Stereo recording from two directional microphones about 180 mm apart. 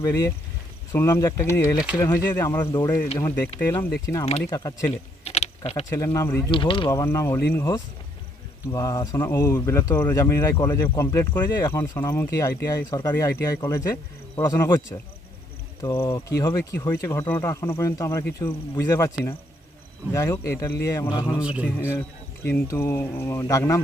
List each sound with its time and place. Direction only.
0.0 s speech: 20° left (ahead or behind)
4.9 s typing: 35° left (ahead or behind)
5.9 s speech: 15° left (ahead or behind)
6.5 s speech: 30° left (ahead or behind)
7.0 s speech: 15° left (ahead or behind)
21.3 s a man's voice: 5° right (ahead or behind)
21.8 s speech: 15° left (ahead or behind)